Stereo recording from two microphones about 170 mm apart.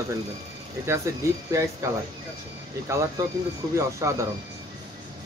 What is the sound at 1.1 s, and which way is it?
Speech, 20° right (ahead or behind).